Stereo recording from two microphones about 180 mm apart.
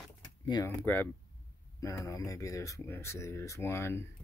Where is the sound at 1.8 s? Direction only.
15° left (ahead or behind).